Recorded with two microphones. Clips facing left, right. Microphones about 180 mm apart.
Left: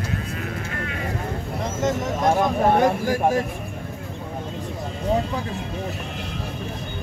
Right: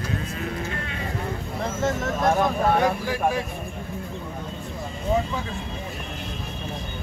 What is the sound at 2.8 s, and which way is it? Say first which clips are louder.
Speech: left 4 dB; 45° left (ahead or behind).